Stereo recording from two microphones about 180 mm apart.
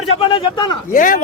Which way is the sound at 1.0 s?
50° left (ahead or behind).